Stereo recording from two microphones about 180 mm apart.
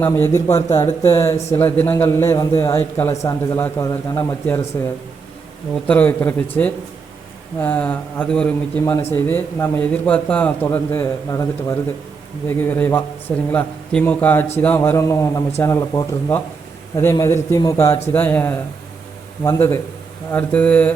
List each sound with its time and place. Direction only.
0.0 s speech: 10° left (ahead or behind)
5.7 s speech: 10° left (ahead or behind)